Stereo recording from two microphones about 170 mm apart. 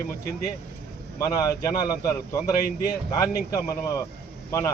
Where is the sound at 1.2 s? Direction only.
20° left (ahead or behind).